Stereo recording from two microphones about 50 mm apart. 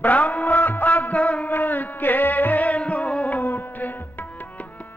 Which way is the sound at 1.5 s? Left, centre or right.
Left.